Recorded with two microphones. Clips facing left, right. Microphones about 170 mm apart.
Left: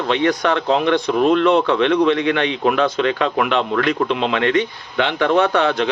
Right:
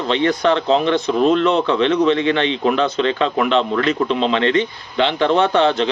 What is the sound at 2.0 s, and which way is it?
A man's voice, 25° right (ahead or behind).